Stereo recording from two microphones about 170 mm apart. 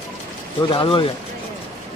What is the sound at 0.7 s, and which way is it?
Speech, 30° left (ahead or behind).